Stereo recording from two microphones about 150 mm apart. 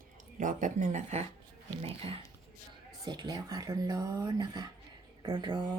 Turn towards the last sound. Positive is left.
turn(degrees=-30)  # may be behind; listen again after turning